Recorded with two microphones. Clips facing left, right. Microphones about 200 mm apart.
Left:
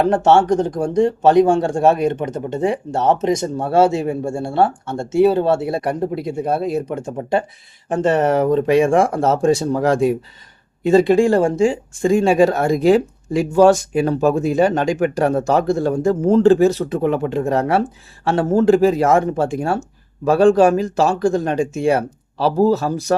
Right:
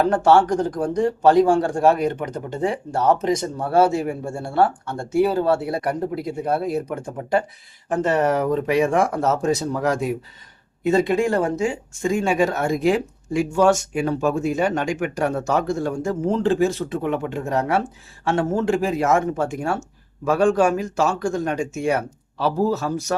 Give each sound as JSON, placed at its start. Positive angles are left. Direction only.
{"t": 0.0, "sound": "speech", "side_deg": 25}